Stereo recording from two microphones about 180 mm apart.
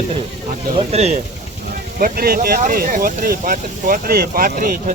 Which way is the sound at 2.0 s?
55° right (ahead or behind).